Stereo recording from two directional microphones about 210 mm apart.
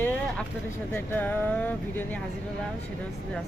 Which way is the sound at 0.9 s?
10° left (ahead or behind).